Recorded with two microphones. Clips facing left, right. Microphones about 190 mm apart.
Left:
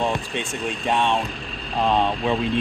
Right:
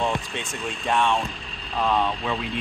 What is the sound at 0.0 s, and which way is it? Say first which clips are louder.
Speech: left 2 dB; 15° left (ahead or behind).